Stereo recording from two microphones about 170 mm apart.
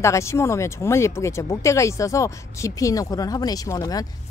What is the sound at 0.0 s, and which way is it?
A woman's voice, 15° left (ahead or behind).